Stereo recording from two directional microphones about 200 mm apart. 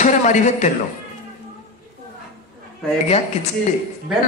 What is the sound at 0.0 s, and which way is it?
Speech, 35° left (ahead or behind).